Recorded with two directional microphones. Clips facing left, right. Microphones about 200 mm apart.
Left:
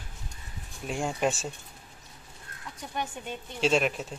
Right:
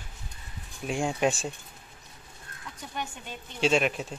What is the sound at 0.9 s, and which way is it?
Speech, centre (ahead or behind).